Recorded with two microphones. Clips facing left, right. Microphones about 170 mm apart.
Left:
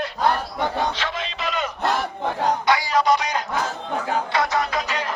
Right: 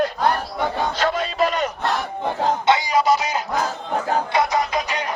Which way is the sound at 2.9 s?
5° right (ahead or behind).